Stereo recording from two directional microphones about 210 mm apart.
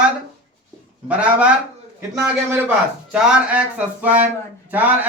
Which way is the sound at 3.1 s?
5° right (ahead or behind).